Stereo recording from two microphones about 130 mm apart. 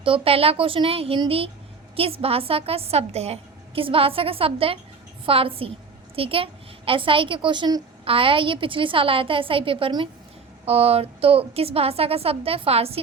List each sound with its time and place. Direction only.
0.0 s a woman's voice: 45° right (ahead or behind)